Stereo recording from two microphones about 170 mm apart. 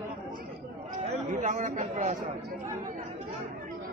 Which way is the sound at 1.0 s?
45° right (ahead or behind).